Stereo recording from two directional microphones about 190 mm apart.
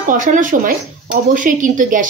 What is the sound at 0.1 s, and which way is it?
Speech, 45° right (ahead or behind).